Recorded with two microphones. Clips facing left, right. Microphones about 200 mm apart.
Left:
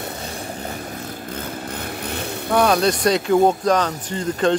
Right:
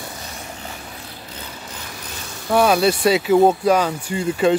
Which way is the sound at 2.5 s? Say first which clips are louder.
Right 1 dB; 5° right (ahead or behind).